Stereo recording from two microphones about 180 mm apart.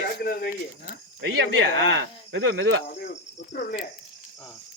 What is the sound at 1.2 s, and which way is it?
Speech, 80° right.